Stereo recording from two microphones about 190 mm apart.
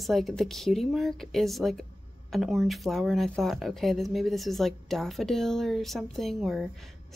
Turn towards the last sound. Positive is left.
turn(degrees=0)  # may be behind; listen again after turning